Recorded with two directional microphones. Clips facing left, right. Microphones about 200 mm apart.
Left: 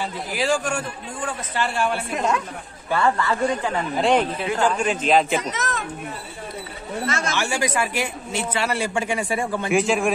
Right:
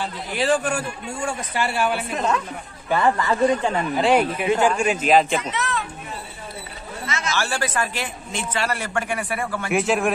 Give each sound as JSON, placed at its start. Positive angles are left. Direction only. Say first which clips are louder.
{"t": 0.0, "sound": "a man's voice", "louder": "right 1 dB", "side_deg": 0}
{"t": 2.1, "sound": "speech", "louder": "left 1 dB", "side_deg": 10}
{"t": 2.9, "sound": "a man's voice", "louder": "right 1 dB", "side_deg": -15}
{"t": 4.0, "sound": "a man's voice", "louder": "right 1 dB", "side_deg": -10}
{"t": 5.4, "sound": "a child's voice", "louder": "right 1 dB", "side_deg": 40}
{"t": 7.1, "sound": "speech", "louder": "left 1 dB", "side_deg": 50}
{"t": 7.3, "sound": "speech", "louder": "right 1 dB", "side_deg": 15}
{"t": 9.7, "sound": "a man's voice", "louder": "even", "side_deg": 0}